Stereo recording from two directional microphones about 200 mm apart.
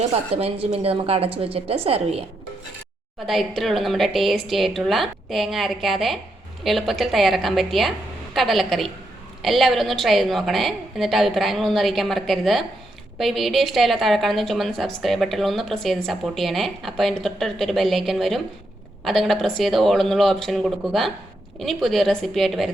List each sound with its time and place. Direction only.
0.0 s a woman's voice: 35° right (ahead or behind)
3.2 s a woman's voice: centre (ahead or behind)